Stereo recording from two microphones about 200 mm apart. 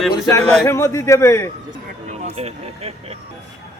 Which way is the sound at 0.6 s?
15° left (ahead or behind).